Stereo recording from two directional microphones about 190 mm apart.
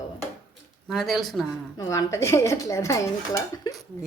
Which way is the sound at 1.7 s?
15° left (ahead or behind).